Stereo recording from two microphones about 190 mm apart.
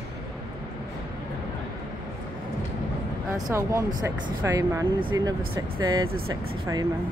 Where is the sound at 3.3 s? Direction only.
20° right (ahead or behind).